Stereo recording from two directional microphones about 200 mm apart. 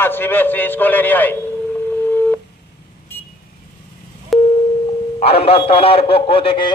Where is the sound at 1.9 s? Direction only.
10° left (ahead or behind).